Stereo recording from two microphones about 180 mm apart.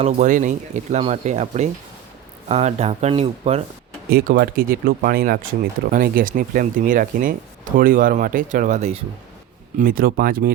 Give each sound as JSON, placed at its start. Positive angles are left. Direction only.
{"t": 0.0, "sound": "speech", "side_deg": -45}
{"t": 4.1, "sound": "speech", "side_deg": -55}
{"t": 9.7, "sound": "speech", "side_deg": -55}